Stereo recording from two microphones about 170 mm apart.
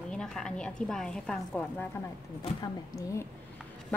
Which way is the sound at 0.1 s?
5° left (ahead or behind).